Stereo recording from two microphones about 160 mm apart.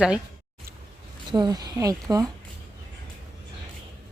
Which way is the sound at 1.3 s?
25° right (ahead or behind).